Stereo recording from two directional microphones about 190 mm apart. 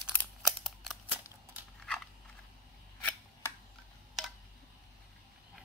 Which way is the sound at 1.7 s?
5° left (ahead or behind).